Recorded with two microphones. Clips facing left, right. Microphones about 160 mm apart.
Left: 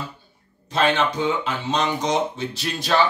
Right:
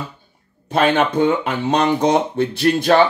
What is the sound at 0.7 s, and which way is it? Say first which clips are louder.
Speech: right 4 dB; 55° right (ahead or behind).